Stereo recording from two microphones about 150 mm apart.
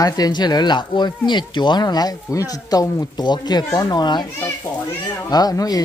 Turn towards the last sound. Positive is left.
turn(degrees=25)  # may be behind; listen again after turning